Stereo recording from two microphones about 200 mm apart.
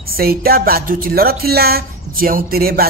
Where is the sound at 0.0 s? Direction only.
50° right (ahead or behind).